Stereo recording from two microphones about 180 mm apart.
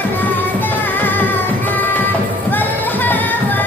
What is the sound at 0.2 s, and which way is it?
Music, 10° left (ahead or behind).